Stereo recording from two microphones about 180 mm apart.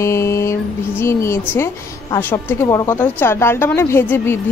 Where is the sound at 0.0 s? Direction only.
15° left (ahead or behind).